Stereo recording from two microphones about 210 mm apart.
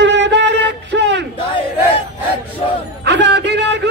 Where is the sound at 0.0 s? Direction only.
55° right (ahead or behind).